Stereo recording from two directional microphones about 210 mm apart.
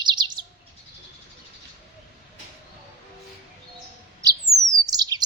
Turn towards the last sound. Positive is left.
turn(degrees=-20)  # may be behind; listen again after turning